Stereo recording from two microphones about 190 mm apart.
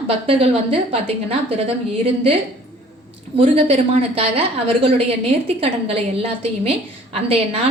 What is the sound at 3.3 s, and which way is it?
A woman's voice, 30° right (ahead or behind).